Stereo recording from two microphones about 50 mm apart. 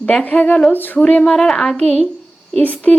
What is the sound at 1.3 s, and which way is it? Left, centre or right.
Speech, centre.